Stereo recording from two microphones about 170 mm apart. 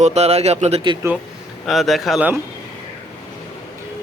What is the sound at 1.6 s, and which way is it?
Speech, centre (ahead or behind).